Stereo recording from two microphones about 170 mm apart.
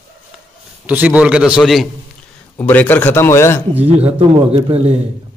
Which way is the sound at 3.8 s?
35° right (ahead or behind).